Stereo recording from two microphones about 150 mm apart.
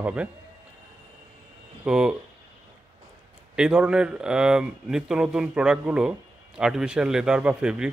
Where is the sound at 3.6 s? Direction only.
5° right (ahead or behind).